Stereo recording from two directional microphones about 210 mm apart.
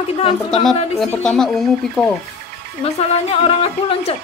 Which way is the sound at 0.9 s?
5° left (ahead or behind).